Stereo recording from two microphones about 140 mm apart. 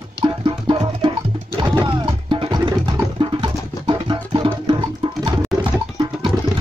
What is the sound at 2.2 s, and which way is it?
Music, 35° right (ahead or behind).